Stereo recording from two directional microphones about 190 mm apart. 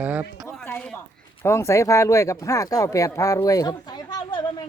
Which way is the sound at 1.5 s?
15° left (ahead or behind).